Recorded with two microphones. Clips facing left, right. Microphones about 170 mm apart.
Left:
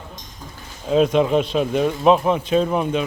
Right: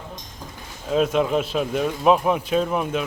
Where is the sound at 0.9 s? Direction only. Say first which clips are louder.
Left 4 dB; centre (ahead or behind).